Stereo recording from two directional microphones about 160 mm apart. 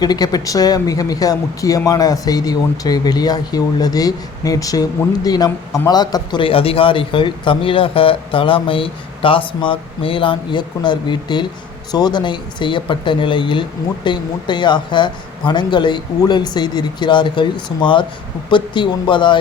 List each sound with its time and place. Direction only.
0.0 s speech: 25° left (ahead or behind)